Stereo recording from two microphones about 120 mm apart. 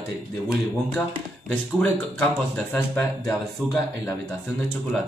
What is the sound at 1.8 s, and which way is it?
Speech, centre (ahead or behind).